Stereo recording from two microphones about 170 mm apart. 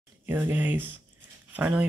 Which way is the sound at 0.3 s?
10° right (ahead or behind).